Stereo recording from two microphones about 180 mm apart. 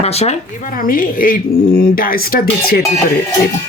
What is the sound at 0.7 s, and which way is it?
Speech, 50° left (ahead or behind).